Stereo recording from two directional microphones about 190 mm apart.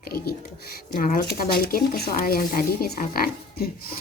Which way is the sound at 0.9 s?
45° left (ahead or behind).